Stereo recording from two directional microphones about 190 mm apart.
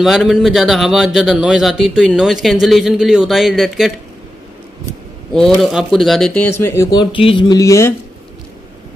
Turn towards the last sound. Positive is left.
turn(degrees=15)  # may be behind; listen again after turning